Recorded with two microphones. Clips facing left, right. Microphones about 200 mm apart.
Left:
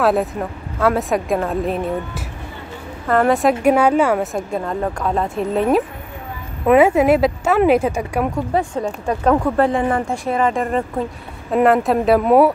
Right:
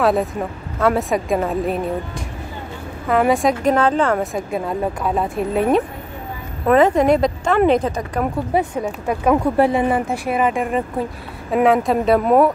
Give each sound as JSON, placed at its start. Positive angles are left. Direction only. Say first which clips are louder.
{"t": 0.0, "sound": "a woman's voice", "louder": "even", "side_deg": 0}
{"t": 8.5, "sound": "a woman's voice", "louder": "right 1 dB", "side_deg": -5}
{"t": 11.5, "sound": "a woman's voice", "louder": "left 1 dB", "side_deg": 0}